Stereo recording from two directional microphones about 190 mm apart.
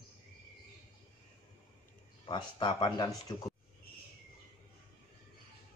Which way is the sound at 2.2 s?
25° left (ahead or behind).